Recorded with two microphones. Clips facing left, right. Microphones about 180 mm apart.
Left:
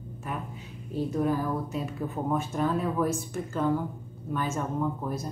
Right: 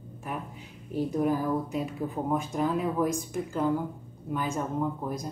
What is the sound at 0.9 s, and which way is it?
Speech, 15° right (ahead or behind).